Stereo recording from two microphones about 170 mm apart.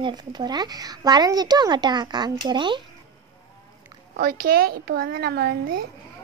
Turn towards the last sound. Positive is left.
turn(degrees=-70)  # may be behind; listen again after turning